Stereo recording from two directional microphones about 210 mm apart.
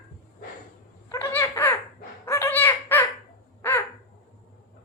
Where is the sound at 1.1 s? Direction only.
10° left (ahead or behind).